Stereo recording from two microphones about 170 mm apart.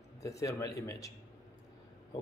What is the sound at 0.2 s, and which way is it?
Speech, 20° left (ahead or behind).